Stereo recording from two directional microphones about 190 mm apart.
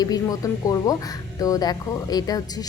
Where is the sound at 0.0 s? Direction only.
20° left (ahead or behind).